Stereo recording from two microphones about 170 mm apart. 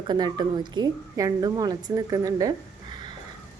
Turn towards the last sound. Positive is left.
turn(degrees=-25)  # may be behind; listen again after turning